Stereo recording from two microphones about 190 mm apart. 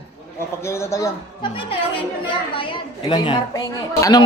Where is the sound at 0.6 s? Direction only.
15° left (ahead or behind).